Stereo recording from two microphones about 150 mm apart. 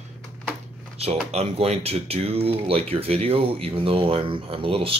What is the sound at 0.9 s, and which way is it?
Speech, 40° right (ahead or behind).